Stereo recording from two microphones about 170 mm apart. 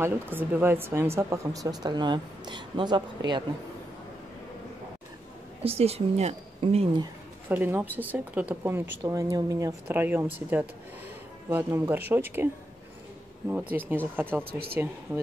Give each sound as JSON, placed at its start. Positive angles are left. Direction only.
{"t": 0.0, "sound": "speech", "side_deg": -10}
{"t": 5.6, "sound": "speech", "side_deg": -35}
{"t": 7.4, "sound": "speech", "side_deg": -10}
{"t": 13.5, "sound": "speech", "side_deg": -10}
{"t": 14.4, "sound": "speech", "side_deg": -65}
{"t": 15.1, "sound": "speech", "side_deg": -20}